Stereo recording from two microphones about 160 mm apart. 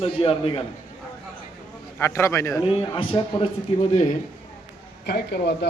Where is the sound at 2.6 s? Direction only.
35° left (ahead or behind).